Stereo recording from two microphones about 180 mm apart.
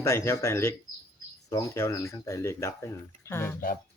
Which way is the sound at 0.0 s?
15° left (ahead or behind).